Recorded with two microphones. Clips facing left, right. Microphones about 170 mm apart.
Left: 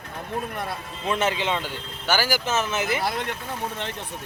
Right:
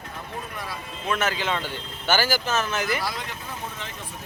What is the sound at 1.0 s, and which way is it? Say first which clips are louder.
Speech: left 2 dB; 25° left (ahead or behind).